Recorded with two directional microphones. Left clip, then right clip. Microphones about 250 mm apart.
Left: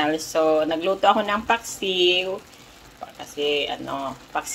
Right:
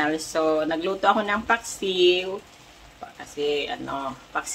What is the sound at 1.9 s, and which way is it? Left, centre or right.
Speech, right.